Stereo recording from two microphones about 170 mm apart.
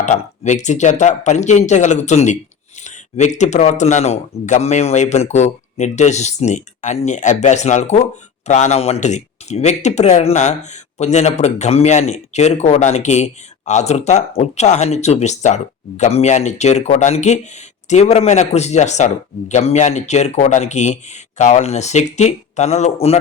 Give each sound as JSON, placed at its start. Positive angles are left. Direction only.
{"t": 0.0, "sound": "speech", "side_deg": 45}